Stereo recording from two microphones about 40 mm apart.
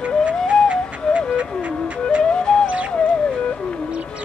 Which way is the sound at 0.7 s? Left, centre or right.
Right.